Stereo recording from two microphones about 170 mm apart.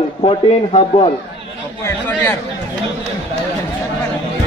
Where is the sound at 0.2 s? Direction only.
35° left (ahead or behind).